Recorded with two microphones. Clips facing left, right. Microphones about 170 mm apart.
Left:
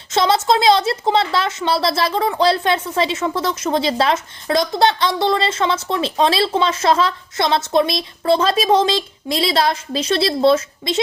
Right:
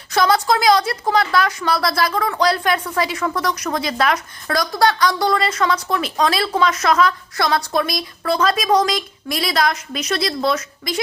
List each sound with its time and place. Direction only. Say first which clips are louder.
0.1 s a woman's voice: left 1 dB; 25° left (ahead or behind)